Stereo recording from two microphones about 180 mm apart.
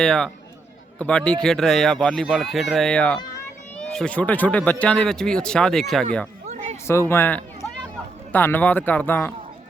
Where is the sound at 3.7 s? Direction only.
5° left (ahead or behind).